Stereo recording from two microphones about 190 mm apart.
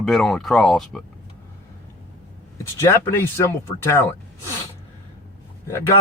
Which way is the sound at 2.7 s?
15° left (ahead or behind).